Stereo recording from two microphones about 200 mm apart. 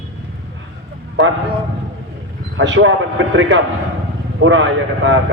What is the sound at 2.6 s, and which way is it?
Speech, 70° right (ahead or behind).